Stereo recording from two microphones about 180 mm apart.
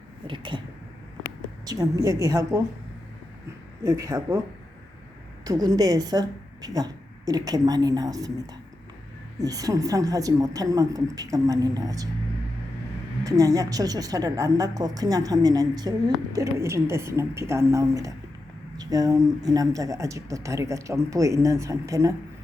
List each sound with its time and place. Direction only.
0.3 s a woman's voice: 25° right (ahead or behind)
1.6 s a woman's voice: 20° right (ahead or behind)
3.8 s speech: 20° right (ahead or behind)
5.5 s a woman's voice: 20° right (ahead or behind)
13.2 s a woman's voice: 20° right (ahead or behind)